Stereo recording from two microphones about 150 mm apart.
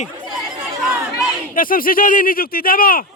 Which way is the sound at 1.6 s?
70° left (ahead or behind).